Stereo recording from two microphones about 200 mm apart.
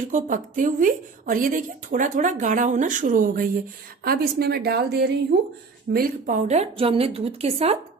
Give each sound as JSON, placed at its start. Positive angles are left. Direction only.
{"t": 0.1, "sound": "a woman's voice", "side_deg": -40}
{"t": 5.9, "sound": "a woman's voice", "side_deg": -45}